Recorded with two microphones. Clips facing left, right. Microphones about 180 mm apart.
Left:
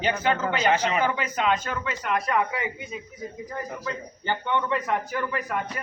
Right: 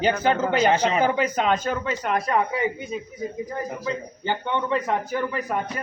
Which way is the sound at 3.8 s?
25° right (ahead or behind).